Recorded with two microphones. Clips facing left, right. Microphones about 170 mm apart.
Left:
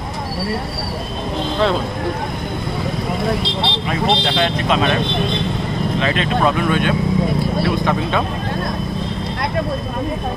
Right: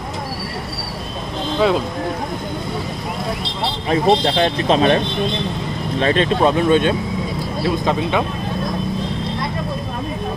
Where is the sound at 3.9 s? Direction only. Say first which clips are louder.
Right 5 dB; 30° right (ahead or behind).